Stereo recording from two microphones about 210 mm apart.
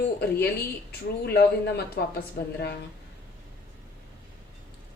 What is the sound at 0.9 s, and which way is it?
Speech, 50° left (ahead or behind).